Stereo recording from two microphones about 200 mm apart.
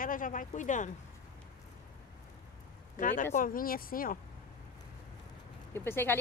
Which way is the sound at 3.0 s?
40° left (ahead or behind).